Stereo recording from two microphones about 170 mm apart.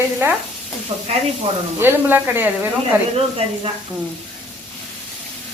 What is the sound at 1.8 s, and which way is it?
Speech, 10° right (ahead or behind).